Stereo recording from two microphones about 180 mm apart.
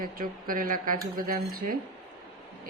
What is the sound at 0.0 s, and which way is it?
Speech, 50° right (ahead or behind).